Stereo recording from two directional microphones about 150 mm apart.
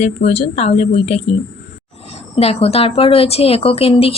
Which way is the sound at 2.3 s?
40° left (ahead or behind).